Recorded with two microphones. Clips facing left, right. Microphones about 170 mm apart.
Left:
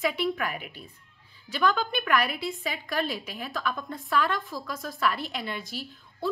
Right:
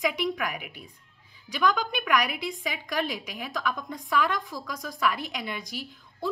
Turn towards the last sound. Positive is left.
turn(degrees=-15)  # may be behind; listen again after turning